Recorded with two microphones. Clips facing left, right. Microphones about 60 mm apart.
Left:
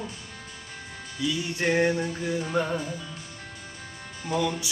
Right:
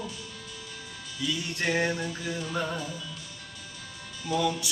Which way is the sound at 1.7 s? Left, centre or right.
Left.